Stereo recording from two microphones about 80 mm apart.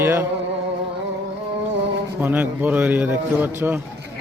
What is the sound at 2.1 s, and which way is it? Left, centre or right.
A man's voice, right.